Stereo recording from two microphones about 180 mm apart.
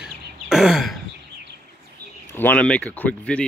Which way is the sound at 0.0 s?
Centre (ahead or behind).